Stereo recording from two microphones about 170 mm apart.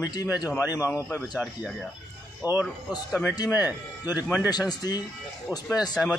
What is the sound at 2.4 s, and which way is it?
Speech, 10° right (ahead or behind).